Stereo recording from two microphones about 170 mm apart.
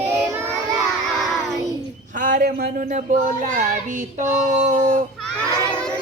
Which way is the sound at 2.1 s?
50° right (ahead or behind).